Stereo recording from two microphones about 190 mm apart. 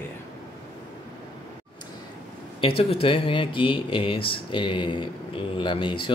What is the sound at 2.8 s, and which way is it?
Speech, 30° left (ahead or behind).